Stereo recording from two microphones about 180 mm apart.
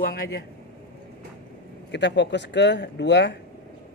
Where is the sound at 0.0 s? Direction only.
55° left (ahead or behind).